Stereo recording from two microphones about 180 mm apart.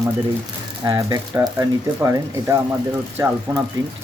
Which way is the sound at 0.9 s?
20° right (ahead or behind).